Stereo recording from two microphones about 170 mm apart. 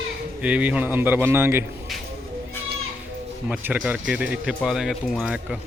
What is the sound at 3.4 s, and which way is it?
A man's voice, 10° right (ahead or behind).